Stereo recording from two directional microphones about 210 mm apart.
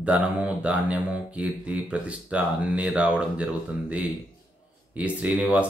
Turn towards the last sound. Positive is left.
turn(degrees=-5)  # may be behind; listen again after turning